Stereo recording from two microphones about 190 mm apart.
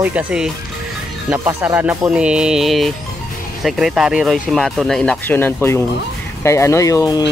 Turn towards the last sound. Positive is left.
turn(degrees=20)  # may be behind; listen again after turning